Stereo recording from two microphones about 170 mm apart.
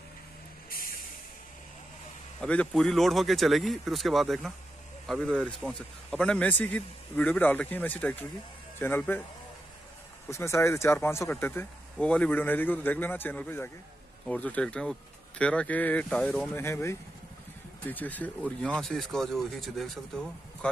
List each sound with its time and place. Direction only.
2.4 s speech: 5° left (ahead or behind)
10.3 s speech: 15° left (ahead or behind)
16.5 s speech: 15° left (ahead or behind)